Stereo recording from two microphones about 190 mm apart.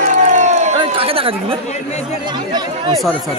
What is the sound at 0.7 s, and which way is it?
Chatter, 30° right (ahead or behind).